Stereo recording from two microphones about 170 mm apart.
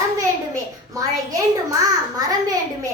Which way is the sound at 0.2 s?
20° right (ahead or behind).